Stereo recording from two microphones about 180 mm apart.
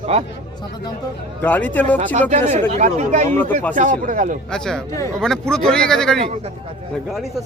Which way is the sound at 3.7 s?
45° right (ahead or behind).